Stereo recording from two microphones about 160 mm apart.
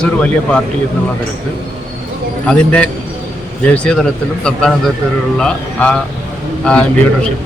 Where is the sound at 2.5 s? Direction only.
10° left (ahead or behind).